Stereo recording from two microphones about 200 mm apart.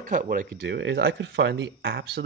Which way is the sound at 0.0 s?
40° right (ahead or behind).